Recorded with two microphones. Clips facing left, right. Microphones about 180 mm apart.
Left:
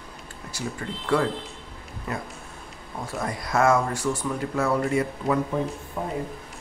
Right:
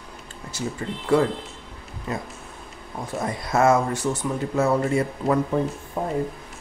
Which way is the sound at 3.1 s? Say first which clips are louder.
Right 2 dB; 25° right (ahead or behind).